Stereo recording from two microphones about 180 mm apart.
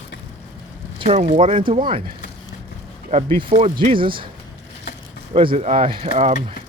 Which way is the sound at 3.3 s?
30° right (ahead or behind).